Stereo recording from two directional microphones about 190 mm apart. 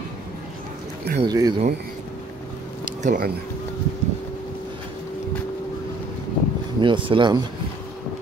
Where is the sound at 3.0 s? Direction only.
45° right (ahead or behind).